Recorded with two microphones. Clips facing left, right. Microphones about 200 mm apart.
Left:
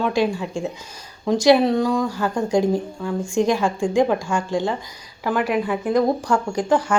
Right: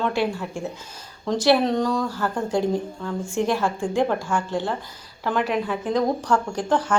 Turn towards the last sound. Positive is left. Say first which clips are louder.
# left 3 dB
turn(degrees=10)  # may be behind; listen again after turning